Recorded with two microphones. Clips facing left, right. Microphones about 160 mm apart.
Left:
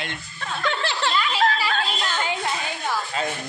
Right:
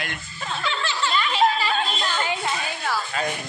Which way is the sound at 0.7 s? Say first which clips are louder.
Left 2 dB; 65° left (ahead or behind).